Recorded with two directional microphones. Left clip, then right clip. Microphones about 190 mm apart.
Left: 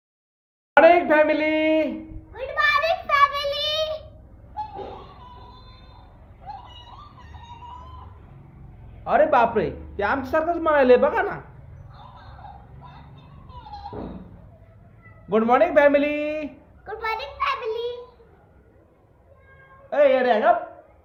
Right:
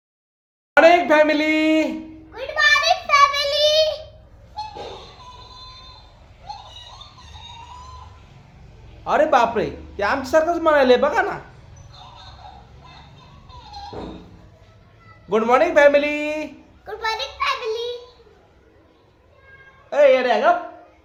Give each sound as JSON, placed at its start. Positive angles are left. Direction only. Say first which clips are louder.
{"t": 0.7, "sound": "speech", "louder": "right 2 dB", "side_deg": -15}
{"t": 2.8, "sound": "a sound", "louder": "right 4 dB", "side_deg": -15}
{"t": 9.0, "sound": "speech", "louder": "right 1 dB", "side_deg": -15}
{"t": 15.3, "sound": "a man's voice", "louder": "right 2 dB", "side_deg": -15}
{"t": 19.9, "sound": "speech", "louder": "right 3 dB", "side_deg": -15}